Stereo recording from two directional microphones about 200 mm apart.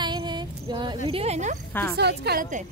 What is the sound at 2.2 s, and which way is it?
Speech, 45° right (ahead or behind).